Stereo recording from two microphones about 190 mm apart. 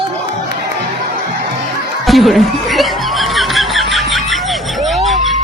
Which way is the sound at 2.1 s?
Centre (ahead or behind).